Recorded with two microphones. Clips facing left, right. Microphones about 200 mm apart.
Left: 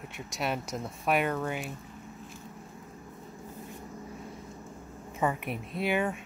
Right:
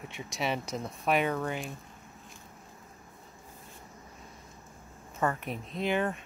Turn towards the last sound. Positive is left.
turn(degrees=10)  # may be behind; listen again after turning